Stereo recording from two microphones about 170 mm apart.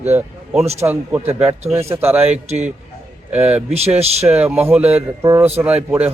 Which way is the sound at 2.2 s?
40° right (ahead or behind).